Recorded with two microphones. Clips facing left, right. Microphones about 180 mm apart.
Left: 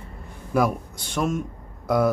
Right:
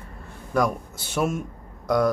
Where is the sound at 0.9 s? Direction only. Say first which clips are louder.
Even; 5° right (ahead or behind).